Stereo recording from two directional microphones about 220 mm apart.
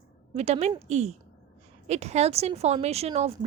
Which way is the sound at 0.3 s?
30° right (ahead or behind).